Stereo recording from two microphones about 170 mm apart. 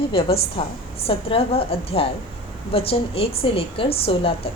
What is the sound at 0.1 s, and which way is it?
A woman's voice, 30° left (ahead or behind).